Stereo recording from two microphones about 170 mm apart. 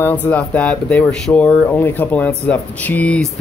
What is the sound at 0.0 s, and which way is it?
Speech, 10° left (ahead or behind).